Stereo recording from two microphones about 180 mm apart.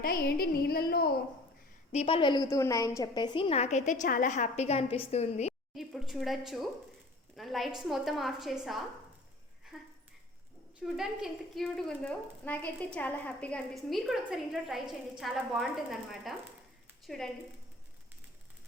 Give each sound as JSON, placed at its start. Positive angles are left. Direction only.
{"t": 0.0, "sound": "a woman's voice", "side_deg": 55}
{"t": 1.9, "sound": "a woman's voice", "side_deg": 35}
{"t": 5.7, "sound": "a woman's voice", "side_deg": 0}